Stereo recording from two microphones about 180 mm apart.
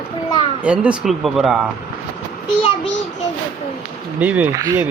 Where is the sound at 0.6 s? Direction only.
5° right (ahead or behind).